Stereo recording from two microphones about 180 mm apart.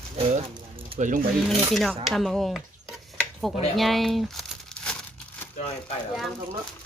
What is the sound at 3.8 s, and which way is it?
Crumpling, centre (ahead or behind).